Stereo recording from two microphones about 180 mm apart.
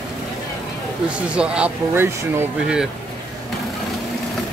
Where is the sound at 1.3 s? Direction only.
5° right (ahead or behind).